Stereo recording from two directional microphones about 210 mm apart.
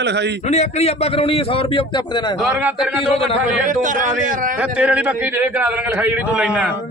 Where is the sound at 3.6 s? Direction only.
40° right (ahead or behind).